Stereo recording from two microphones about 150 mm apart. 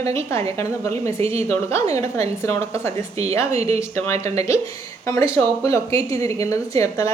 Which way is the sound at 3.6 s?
45° right (ahead or behind).